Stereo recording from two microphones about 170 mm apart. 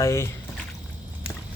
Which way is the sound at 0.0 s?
15° left (ahead or behind).